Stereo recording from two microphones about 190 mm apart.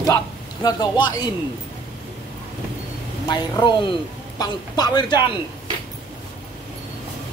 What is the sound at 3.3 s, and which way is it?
A man's voice, 25° left (ahead or behind).